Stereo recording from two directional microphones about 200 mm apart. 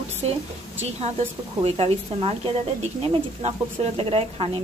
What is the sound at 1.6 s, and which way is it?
Speech, 30° right (ahead or behind).